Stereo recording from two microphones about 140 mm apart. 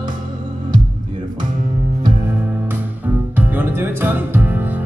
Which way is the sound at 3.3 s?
15° right (ahead or behind).